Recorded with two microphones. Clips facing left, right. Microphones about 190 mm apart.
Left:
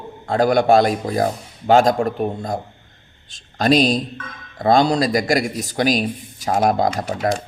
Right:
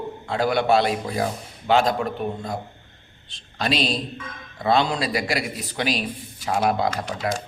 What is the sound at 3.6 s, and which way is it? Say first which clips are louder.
A man's voice: left 8 dB; 45° left (ahead or behind).